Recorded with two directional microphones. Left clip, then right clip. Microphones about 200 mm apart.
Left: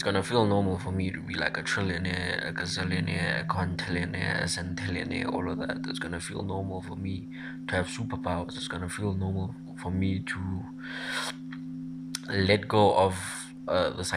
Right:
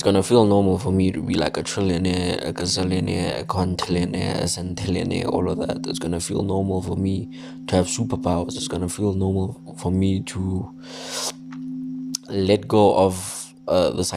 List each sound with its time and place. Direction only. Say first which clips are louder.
0.0 s speech: right 9 dB; 60° right (ahead or behind)
6.4 s speech: right 12 dB; 25° right (ahead or behind)
7.7 s speech: right 9 dB; 60° right (ahead or behind)
9.0 s speech: right 14 dB; 25° right (ahead or behind)
9.8 s speech: right 8 dB; 60° right (ahead or behind)
11.1 s a sound: right 4 dB; 55° right (ahead or behind)
12.1 s speech: right 5 dB; 60° right (ahead or behind)